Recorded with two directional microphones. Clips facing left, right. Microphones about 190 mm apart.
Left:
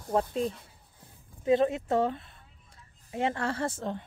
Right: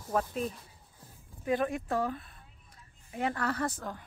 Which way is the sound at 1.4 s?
25° left (ahead or behind).